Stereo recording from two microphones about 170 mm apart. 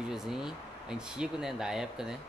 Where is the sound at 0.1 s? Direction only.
5° right (ahead or behind).